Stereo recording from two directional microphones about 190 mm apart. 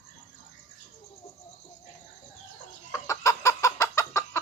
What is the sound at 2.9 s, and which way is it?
Chicken, 15° left (ahead or behind).